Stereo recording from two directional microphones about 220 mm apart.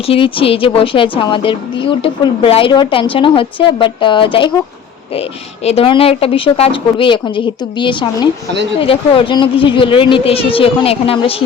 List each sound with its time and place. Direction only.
0.0 s a woman's voice: 25° left (ahead or behind)